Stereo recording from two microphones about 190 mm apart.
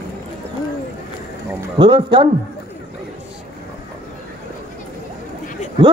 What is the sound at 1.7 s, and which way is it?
Speech, 25° right (ahead or behind).